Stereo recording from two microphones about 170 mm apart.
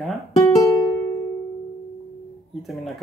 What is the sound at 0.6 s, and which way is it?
Music, 20° left (ahead or behind).